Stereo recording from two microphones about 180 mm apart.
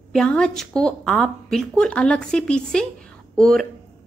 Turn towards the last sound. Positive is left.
turn(degrees=0)  # may be behind; listen again after turning